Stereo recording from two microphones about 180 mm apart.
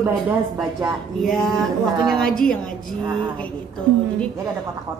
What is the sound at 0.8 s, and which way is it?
A woman's voice, centre (ahead or behind).